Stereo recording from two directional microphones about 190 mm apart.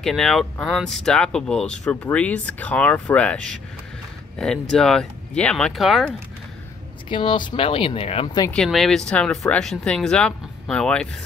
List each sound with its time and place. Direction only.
0.0 s speech: centre (ahead or behind)
7.1 s speech: 25° left (ahead or behind)
8.5 s speech: centre (ahead or behind)